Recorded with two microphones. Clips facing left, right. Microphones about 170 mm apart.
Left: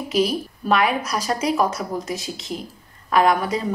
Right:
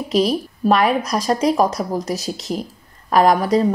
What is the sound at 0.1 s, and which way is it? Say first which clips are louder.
Speech: right 3 dB; 35° right (ahead or behind).